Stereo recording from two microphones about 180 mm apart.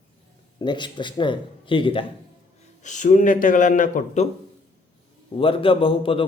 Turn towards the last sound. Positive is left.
turn(degrees=30)  # may be behind; listen again after turning